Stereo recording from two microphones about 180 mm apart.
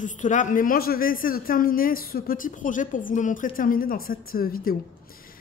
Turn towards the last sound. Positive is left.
turn(degrees=55)  # may be behind; listen again after turning